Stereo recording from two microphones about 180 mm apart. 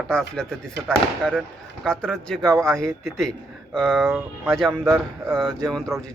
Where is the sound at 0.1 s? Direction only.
5° left (ahead or behind).